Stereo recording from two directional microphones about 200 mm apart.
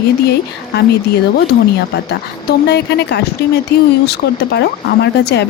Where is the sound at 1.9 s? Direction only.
55° left (ahead or behind).